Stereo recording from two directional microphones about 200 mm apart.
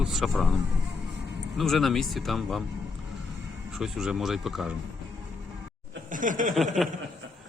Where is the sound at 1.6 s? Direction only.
Centre (ahead or behind).